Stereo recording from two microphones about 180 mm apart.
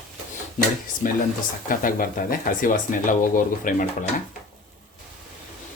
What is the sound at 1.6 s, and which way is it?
Speech, 50° left (ahead or behind).